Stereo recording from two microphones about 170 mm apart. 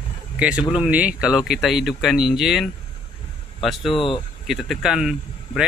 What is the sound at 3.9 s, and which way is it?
Speech, 30° left (ahead or behind).